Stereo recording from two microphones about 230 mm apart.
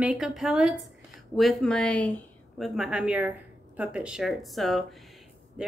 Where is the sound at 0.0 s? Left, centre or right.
Centre.